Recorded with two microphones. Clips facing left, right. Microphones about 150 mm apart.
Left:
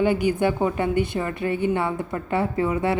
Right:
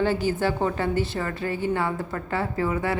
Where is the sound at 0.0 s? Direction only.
15° left (ahead or behind).